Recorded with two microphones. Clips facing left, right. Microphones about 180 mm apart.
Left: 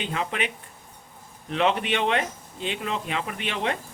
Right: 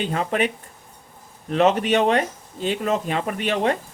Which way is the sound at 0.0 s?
45° right (ahead or behind).